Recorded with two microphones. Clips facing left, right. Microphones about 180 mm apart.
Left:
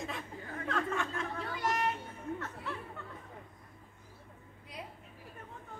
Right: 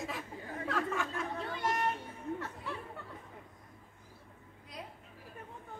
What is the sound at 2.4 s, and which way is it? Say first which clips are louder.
Music: even; 15° right (ahead or behind).